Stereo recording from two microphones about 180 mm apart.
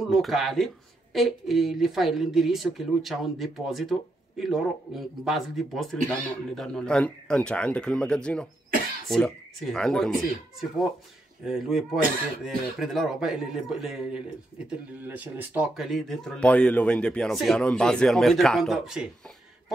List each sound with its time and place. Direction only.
0.0 s speech: centre (ahead or behind)
11.4 s speech: centre (ahead or behind)